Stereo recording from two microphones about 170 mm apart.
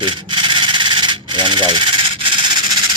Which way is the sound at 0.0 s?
30° right (ahead or behind).